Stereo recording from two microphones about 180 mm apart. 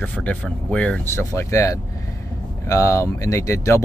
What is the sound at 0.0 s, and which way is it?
Speech, 10° left (ahead or behind).